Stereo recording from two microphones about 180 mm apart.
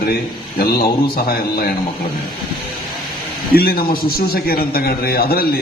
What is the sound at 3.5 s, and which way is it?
A man's voice, 55° left (ahead or behind).